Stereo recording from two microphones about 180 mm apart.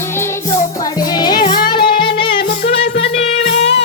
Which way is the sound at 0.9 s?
20° left (ahead or behind).